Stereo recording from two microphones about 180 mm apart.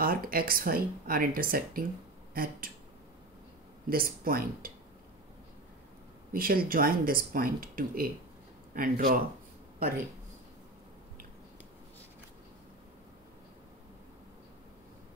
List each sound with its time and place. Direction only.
0.0 s speech: 55° right (ahead or behind)
3.9 s speech: 50° right (ahead or behind)
6.3 s speech: 55° right (ahead or behind)